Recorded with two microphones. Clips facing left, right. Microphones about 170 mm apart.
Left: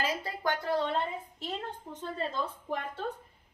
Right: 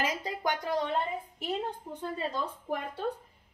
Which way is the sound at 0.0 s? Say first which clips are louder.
Right 1 dB; 15° right (ahead or behind).